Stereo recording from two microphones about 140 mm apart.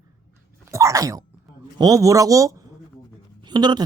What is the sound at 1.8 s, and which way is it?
A woman's voice, 25° right (ahead or behind).